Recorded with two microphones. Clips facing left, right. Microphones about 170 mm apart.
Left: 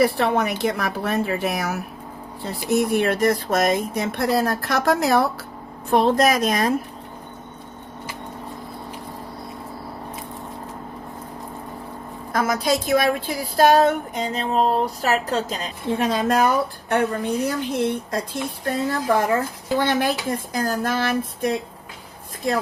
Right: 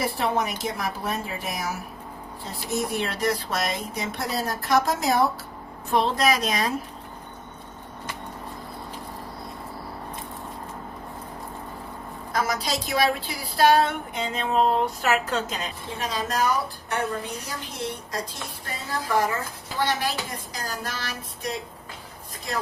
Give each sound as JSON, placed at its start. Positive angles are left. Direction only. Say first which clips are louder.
{"t": 0.0, "sound": "a woman's voice", "louder": "left 6 dB", "side_deg": 65}
{"t": 5.9, "sound": "speech", "louder": "left 5 dB", "side_deg": 50}
{"t": 12.3, "sound": "a woman's voice", "louder": "left 6 dB", "side_deg": 50}
{"t": 16.0, "sound": "speech", "louder": "left 7 dB", "side_deg": 60}